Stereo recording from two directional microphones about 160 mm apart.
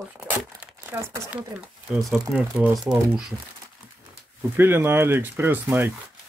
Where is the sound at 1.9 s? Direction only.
Centre (ahead or behind).